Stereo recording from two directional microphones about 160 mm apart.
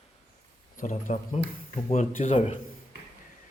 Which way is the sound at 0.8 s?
55° left (ahead or behind).